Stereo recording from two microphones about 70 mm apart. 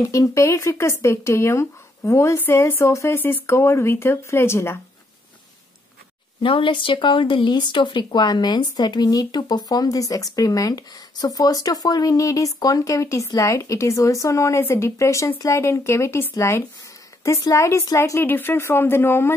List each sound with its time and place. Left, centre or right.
0.0 s a woman's voice: left
7.4 s a woman's voice: left